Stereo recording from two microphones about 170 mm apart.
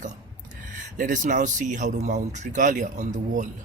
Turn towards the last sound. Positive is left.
turn(degrees=-45)  # may be behind; listen again after turning